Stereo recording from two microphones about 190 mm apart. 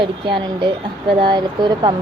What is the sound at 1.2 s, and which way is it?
Speech, 25° right (ahead or behind).